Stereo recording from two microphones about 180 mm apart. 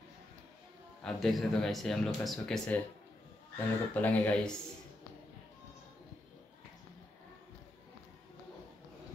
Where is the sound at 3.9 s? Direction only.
10° left (ahead or behind).